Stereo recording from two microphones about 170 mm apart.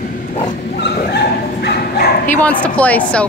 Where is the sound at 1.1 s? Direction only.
70° left (ahead or behind).